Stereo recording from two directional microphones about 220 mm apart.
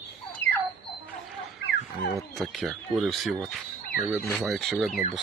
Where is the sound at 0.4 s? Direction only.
55° left (ahead or behind).